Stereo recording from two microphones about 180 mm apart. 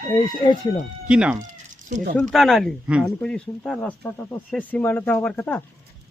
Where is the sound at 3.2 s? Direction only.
5° left (ahead or behind).